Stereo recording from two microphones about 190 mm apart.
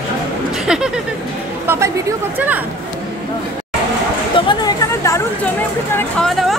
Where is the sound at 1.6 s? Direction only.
15° right (ahead or behind).